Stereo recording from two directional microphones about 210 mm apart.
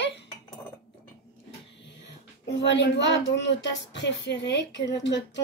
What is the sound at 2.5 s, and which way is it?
Speech, 60° left (ahead or behind).